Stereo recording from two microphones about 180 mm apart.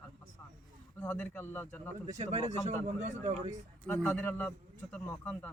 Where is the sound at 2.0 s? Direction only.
40° right (ahead or behind).